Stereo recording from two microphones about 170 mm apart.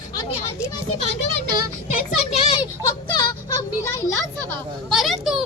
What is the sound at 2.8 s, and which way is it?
Music, 25° left (ahead or behind).